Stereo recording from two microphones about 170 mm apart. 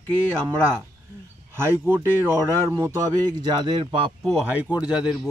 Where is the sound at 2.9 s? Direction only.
25° right (ahead or behind).